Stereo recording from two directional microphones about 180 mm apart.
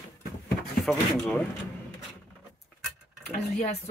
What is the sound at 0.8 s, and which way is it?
Speech, centre (ahead or behind).